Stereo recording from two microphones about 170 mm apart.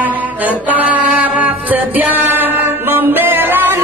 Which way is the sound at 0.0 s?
10° right (ahead or behind).